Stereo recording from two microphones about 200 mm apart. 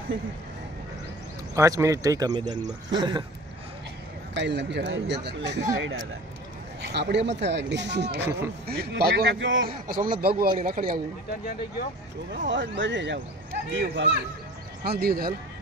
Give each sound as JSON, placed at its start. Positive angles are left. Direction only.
{"t": 1.5, "sound": "speech", "side_deg": -15}
{"t": 3.0, "sound": "a sound", "side_deg": -25}
{"t": 4.3, "sound": "speech", "side_deg": -60}
{"t": 5.8, "sound": "speech", "side_deg": -75}
{"t": 6.8, "sound": "speech", "side_deg": -55}
{"t": 9.7, "sound": "speech", "side_deg": -45}
{"t": 12.3, "sound": "speech", "side_deg": -65}